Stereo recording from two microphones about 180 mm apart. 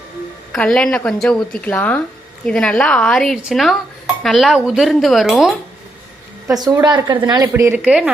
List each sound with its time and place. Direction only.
0.5 s a woman's voice: 5° left (ahead or behind)
6.5 s a woman's voice: 20° right (ahead or behind); by 8.1 s 5° right (ahead or behind)